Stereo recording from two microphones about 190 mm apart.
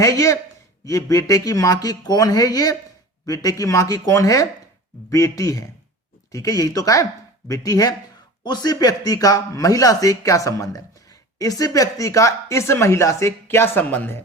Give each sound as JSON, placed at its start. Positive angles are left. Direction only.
{"t": 0.0, "sound": "speech", "side_deg": 15}